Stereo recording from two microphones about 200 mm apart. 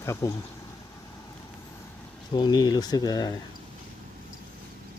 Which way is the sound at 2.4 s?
20° left (ahead or behind).